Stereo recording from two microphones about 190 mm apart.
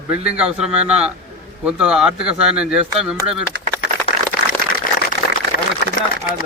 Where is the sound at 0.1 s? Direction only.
5° right (ahead or behind).